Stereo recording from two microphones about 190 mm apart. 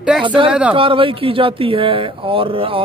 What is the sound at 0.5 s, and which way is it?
Speech, 5° right (ahead or behind).